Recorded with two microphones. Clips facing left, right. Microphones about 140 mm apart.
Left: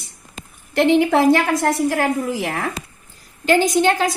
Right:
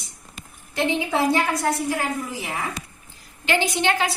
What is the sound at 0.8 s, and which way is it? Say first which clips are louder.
A woman's voice: left 8 dB; 70° left (ahead or behind).